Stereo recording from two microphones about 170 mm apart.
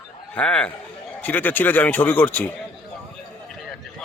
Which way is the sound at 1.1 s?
10° left (ahead or behind).